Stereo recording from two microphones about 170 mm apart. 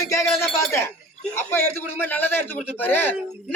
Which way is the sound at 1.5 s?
10° left (ahead or behind).